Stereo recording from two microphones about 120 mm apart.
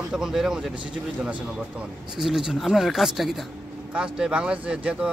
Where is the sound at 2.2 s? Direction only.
Centre (ahead or behind).